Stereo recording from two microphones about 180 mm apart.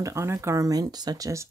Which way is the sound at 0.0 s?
15° right (ahead or behind).